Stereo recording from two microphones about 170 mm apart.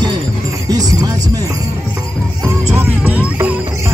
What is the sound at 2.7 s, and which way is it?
Music, 10° right (ahead or behind).